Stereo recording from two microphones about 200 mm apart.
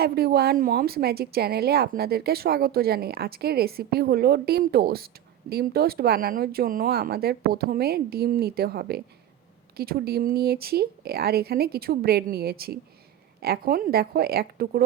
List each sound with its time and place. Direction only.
0.0 s speech: 50° right (ahead or behind)